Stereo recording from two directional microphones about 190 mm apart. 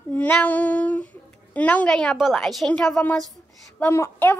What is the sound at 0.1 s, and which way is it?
A woman's voice, 10° left (ahead or behind).